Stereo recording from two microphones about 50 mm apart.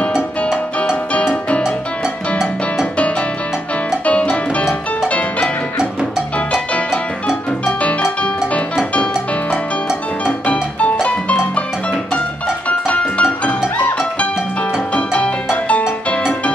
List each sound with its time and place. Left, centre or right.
1.1 s music: left
4.0 s music: left
8.9 s music: left
15.0 s music: left